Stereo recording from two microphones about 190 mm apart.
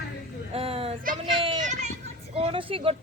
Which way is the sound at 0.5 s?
30° right (ahead or behind).